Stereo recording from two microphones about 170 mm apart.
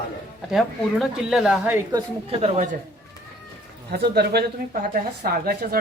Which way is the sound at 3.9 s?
70° right (ahead or behind).